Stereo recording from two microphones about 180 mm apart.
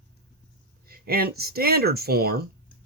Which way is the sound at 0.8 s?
55° right (ahead or behind).